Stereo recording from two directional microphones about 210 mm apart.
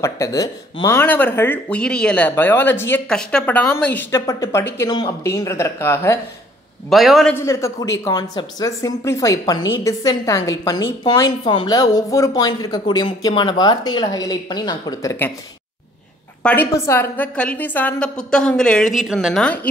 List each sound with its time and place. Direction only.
0.0 s speech: 15° left (ahead or behind)
6.9 s a woman's voice: centre (ahead or behind)
7.3 s a woman's voice: 15° left (ahead or behind)
16.4 s a woman's voice: 10° left (ahead or behind)